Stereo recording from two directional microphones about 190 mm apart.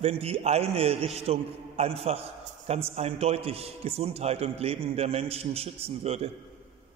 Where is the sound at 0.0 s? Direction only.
30° right (ahead or behind).